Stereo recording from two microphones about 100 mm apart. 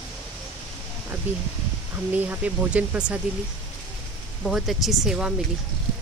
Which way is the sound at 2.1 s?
15° right (ahead or behind).